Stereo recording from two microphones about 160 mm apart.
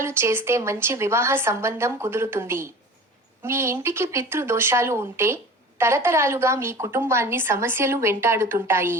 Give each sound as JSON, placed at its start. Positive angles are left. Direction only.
{"t": 0.0, "sound": "speech", "side_deg": -15}